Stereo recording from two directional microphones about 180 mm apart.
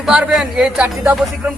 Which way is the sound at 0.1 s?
5° right (ahead or behind).